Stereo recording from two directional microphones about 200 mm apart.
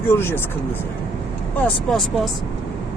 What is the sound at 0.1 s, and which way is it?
Speech, 10° left (ahead or behind).